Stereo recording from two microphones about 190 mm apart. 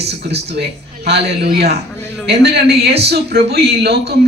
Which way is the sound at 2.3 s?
60° right (ahead or behind).